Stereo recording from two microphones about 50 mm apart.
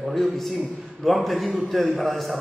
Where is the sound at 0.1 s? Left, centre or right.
Centre.